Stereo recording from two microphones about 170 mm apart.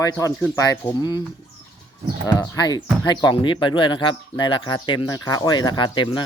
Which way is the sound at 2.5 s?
25° left (ahead or behind).